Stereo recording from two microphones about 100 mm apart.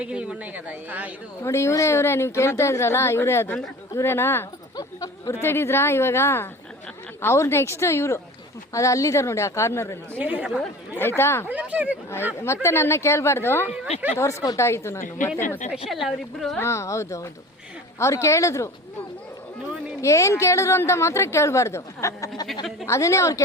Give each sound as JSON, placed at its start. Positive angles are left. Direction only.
{"t": 0.0, "sound": "speech", "side_deg": -10}
{"t": 1.4, "sound": "a woman's voice", "side_deg": 25}
{"t": 4.8, "sound": "a sound", "side_deg": 40}
{"t": 5.3, "sound": "a woman's voice", "side_deg": 25}
{"t": 10.2, "sound": "speech", "side_deg": -15}
{"t": 10.9, "sound": "a woman's voice", "side_deg": 25}
{"t": 11.4, "sound": "speech", "side_deg": -15}
{"t": 12.6, "sound": "a woman's voice", "side_deg": 25}
{"t": 15.9, "sound": "a woman's voice", "side_deg": 0}
{"t": 16.6, "sound": "a woman's voice", "side_deg": 30}
{"t": 20.0, "sound": "a woman's voice", "side_deg": 30}